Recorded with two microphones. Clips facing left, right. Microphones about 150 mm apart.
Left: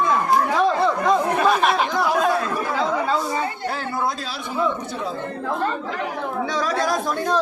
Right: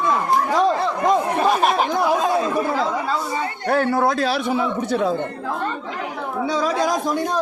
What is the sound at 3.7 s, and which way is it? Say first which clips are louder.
A man's voice: right 7 dB; 60° right (ahead or behind).